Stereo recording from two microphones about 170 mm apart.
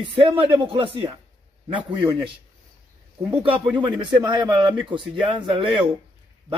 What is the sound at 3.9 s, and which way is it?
Speech, 25° right (ahead or behind).